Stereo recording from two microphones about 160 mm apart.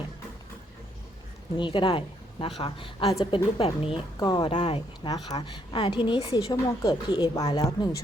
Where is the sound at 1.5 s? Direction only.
30° left (ahead or behind).